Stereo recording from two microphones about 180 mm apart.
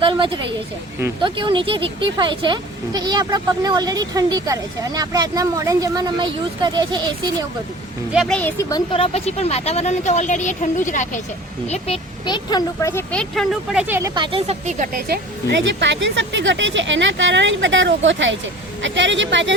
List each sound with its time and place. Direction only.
0.0 s a sound: 25° right (ahead or behind)
1.2 s a woman's voice: 25° right (ahead or behind)
8.1 s speech: centre (ahead or behind)
8.7 s speech: 30° left (ahead or behind)
11.7 s speech: 30° left (ahead or behind); by 13.8 s centre (ahead or behind)
13.8 s speech: 10° right (ahead or behind)
14.2 s speech: 35° right (ahead or behind); by 15.2 s 55° right (ahead or behind)
15.6 s speech: 85° right